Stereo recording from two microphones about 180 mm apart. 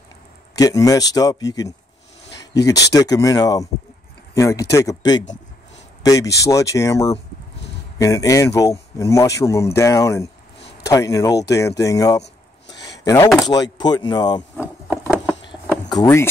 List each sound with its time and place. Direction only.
0.6 s speech: 20° left (ahead or behind)
16.0 s speech: 15° left (ahead or behind)